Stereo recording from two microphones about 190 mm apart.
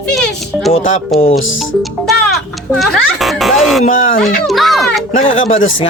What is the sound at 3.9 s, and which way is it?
Speech, 45° left (ahead or behind).